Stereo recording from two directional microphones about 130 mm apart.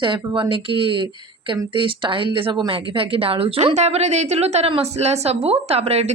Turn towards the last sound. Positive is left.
turn(degrees=-50)  # may be behind; listen again after turning